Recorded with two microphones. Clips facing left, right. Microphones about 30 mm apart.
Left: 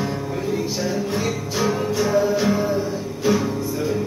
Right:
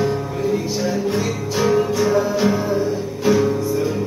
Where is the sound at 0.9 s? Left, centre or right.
Centre.